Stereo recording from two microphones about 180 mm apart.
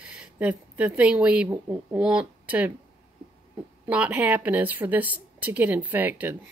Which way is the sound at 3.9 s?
10° right (ahead or behind).